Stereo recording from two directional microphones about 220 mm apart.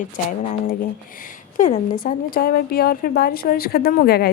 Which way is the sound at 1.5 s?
35° left (ahead or behind).